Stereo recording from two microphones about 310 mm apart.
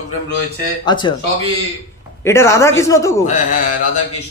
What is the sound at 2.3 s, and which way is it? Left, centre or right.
Speech, centre.